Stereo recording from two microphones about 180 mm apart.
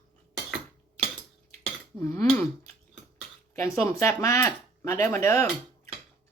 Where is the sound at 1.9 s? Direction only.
15° left (ahead or behind).